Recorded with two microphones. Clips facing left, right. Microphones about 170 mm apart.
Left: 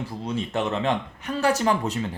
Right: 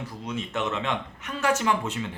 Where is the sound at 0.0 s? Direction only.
35° left (ahead or behind).